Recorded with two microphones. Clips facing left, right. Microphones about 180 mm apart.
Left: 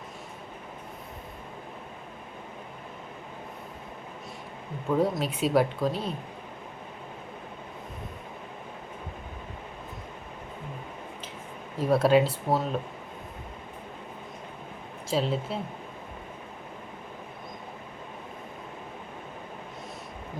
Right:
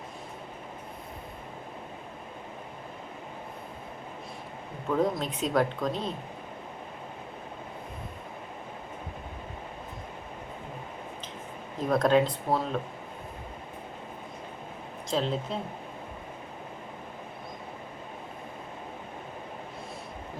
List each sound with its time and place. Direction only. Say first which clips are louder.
4.9 s speech: left 1 dB; 10° left (ahead or behind)
11.8 s speech: left 2 dB; 5° left (ahead or behind)
15.1 s speech: left 1 dB; 5° left (ahead or behind)